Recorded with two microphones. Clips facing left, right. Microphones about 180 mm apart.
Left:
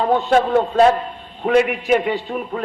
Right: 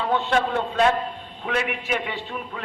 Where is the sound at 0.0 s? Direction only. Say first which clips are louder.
Left 6 dB; 40° left (ahead or behind).